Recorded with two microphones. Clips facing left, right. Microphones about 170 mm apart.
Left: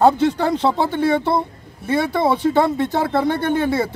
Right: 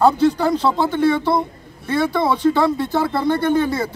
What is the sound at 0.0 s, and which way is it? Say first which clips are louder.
Speech: even; 25° left (ahead or behind).